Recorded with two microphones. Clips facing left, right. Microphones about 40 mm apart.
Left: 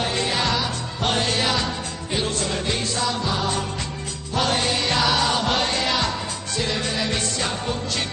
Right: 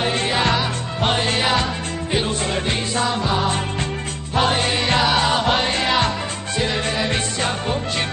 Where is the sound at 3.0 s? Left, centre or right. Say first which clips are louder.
Right 6 dB; right.